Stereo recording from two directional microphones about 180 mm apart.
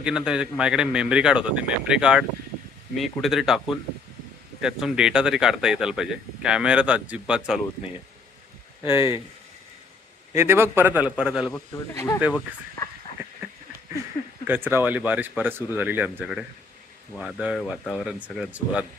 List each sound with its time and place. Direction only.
0.0 s speech: 5° right (ahead or behind)
8.8 s speech: 30° left (ahead or behind)
10.3 s speech: 15° right (ahead or behind)
11.5 s speech: 15° left (ahead or behind)
13.2 s a sound: 10° right (ahead or behind)
14.5 s speech: 10° right (ahead or behind)